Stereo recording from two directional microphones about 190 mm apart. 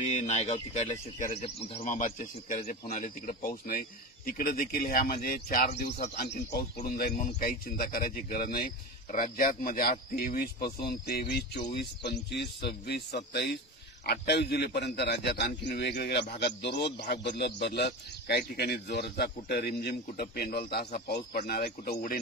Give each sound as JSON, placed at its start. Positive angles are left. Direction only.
{"t": 0.0, "sound": "a man's voice", "side_deg": 35}